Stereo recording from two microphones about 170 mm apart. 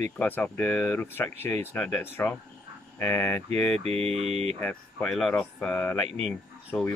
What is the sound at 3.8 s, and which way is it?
Mantra, 40° right (ahead or behind).